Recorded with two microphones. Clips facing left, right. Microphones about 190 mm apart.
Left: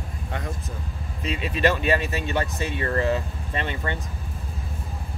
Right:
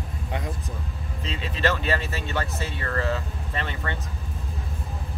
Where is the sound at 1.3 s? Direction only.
15° left (ahead or behind).